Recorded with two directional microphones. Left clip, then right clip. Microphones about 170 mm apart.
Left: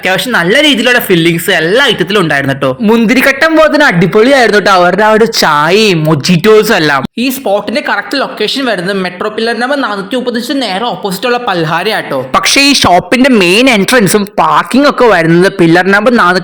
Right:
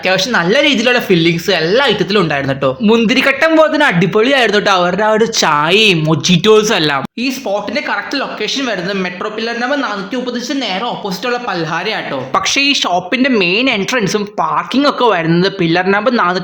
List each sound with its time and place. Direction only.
0.1 s speech: 30° left (ahead or behind)
11.3 s speech: 45° left (ahead or behind)
15.9 s speech: 25° left (ahead or behind)